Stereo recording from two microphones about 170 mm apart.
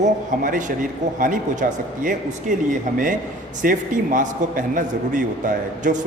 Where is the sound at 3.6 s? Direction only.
50° right (ahead or behind).